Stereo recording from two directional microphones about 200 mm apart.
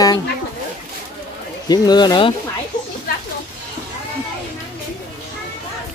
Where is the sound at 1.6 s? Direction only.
20° left (ahead or behind).